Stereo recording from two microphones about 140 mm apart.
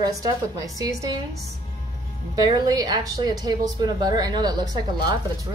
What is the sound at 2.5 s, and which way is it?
Speech, 30° right (ahead or behind).